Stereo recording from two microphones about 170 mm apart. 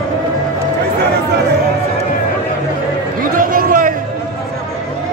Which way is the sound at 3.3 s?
55° right (ahead or behind).